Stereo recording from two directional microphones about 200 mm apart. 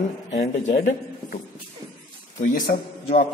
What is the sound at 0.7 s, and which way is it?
Speech, 55° left (ahead or behind).